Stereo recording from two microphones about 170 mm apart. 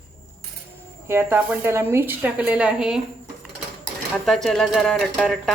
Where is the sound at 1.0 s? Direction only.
15° right (ahead or behind).